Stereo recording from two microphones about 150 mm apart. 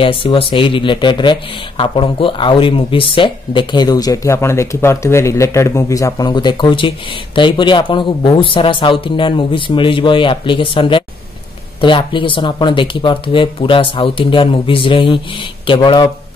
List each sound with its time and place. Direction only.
0.0 s speech: 35° left (ahead or behind)